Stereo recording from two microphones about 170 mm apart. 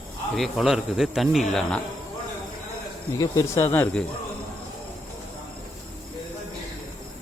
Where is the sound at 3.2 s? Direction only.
20° left (ahead or behind).